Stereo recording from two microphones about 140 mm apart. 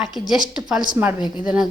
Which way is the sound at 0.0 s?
5° right (ahead or behind).